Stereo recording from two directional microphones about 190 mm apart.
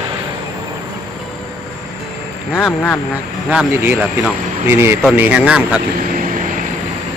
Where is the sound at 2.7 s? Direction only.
10° left (ahead or behind).